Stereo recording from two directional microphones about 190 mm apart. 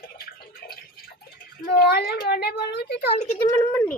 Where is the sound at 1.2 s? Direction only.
55° left (ahead or behind).